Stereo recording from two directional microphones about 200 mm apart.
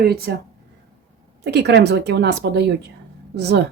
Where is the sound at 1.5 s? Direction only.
60° right (ahead or behind).